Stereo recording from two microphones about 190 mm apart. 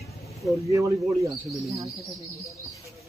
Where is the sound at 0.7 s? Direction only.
15° right (ahead or behind).